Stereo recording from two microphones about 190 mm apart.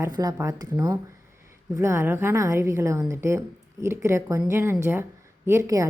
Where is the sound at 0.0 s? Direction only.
20° right (ahead or behind).